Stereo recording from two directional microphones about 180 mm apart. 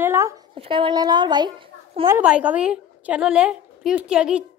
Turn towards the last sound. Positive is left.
turn(degrees=-5)  # may be behind; listen again after turning